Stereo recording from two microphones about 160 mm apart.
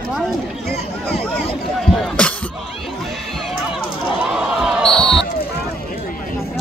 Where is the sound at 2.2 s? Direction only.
5° left (ahead or behind).